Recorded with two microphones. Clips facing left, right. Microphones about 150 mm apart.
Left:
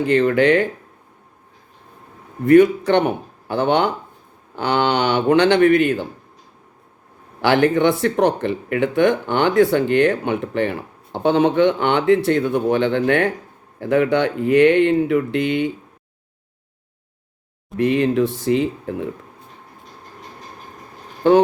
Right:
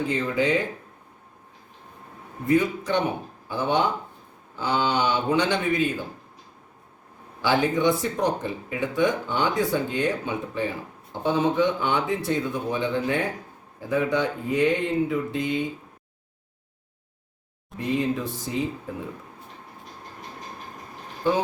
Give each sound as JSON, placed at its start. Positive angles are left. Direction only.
{"t": 0.0, "sound": "speech", "side_deg": 70}
{"t": 2.5, "sound": "speech", "side_deg": 70}
{"t": 7.4, "sound": "speech", "side_deg": 70}
{"t": 17.7, "sound": "speech", "side_deg": 70}
{"t": 21.2, "sound": "speech", "side_deg": 70}